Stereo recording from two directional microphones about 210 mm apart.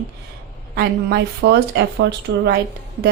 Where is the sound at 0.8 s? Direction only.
50° right (ahead or behind).